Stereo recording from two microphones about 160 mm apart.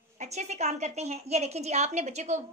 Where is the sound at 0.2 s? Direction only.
45° right (ahead or behind).